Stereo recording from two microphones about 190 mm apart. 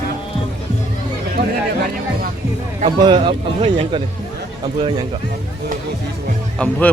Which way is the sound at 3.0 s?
25° right (ahead or behind).